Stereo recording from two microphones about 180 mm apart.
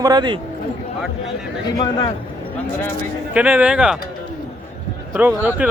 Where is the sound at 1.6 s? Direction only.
25° left (ahead or behind).